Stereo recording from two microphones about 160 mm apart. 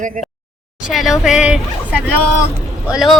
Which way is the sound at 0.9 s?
Centre (ahead or behind).